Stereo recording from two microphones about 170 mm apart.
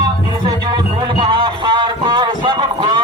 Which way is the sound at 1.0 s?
25° right (ahead or behind).